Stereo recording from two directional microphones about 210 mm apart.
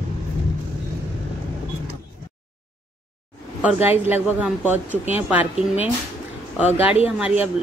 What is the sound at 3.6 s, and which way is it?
Speech, 5° right (ahead or behind).